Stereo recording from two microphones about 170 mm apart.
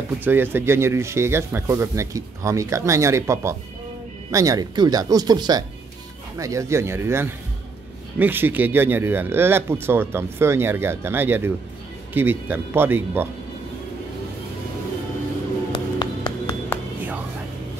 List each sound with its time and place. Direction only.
0.2 s speech: 10° right (ahead or behind)
15.7 s music: 25° left (ahead or behind)